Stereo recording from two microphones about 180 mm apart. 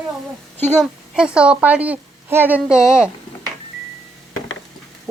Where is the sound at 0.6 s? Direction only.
5° right (ahead or behind).